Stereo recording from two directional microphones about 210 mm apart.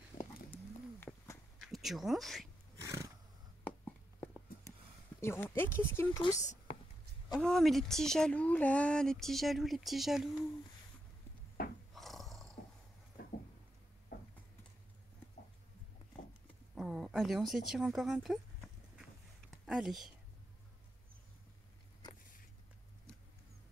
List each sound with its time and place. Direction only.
0.1 s pigeon: 40° left (ahead or behind)
0.5 s bird: 10° left (ahead or behind)
1.6 s speech: centre (ahead or behind)
2.8 s roar: 15° right (ahead or behind)
3.6 s a sound: 10° left (ahead or behind)
5.2 s speech: 10° left (ahead or behind)
6.4 s whispering: 35° left (ahead or behind)
7.3 s speech: centre (ahead or behind)
11.6 s wood: 45° left (ahead or behind)
11.9 s roar: centre (ahead or behind)
13.2 s a sound: 45° left (ahead or behind)
16.7 s speech: centre (ahead or behind)
19.6 s speech: centre (ahead or behind)